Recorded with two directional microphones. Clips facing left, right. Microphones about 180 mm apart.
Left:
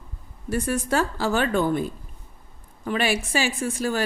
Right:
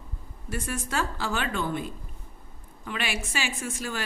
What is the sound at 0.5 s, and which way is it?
A woman's voice, 35° left (ahead or behind).